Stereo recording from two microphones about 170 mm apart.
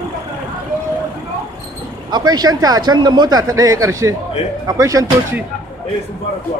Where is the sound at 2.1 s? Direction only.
25° right (ahead or behind).